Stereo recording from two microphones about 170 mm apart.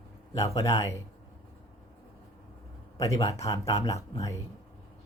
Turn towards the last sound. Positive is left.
turn(degrees=20)  # may be behind; listen again after turning